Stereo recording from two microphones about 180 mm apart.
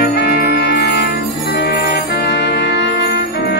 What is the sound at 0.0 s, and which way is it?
Jingle bell, 65° left (ahead or behind).